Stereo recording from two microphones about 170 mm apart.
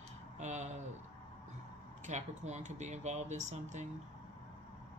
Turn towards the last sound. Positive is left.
turn(degrees=-45)  # may be behind; listen again after turning